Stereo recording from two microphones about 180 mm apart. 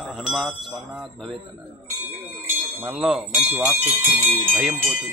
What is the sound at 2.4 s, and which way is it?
Bell, 10° right (ahead or behind).